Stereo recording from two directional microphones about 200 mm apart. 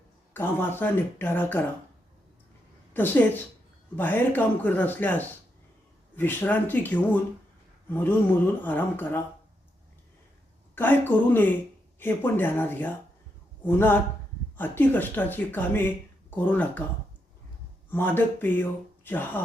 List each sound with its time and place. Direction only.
0.3 s speech: 10° left (ahead or behind)
2.9 s a woman's voice: 10° left (ahead or behind)
10.8 s speech: 10° left (ahead or behind)
17.9 s speech: 10° left (ahead or behind)